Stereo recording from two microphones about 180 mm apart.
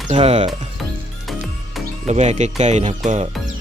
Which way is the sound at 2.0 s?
40° right (ahead or behind).